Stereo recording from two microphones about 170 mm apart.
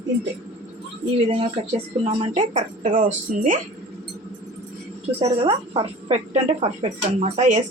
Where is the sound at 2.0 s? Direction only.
40° right (ahead or behind).